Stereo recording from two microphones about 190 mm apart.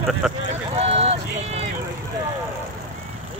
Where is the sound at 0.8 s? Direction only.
35° right (ahead or behind).